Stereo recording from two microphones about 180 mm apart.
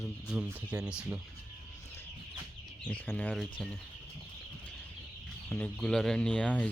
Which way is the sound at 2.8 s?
5° left (ahead or behind).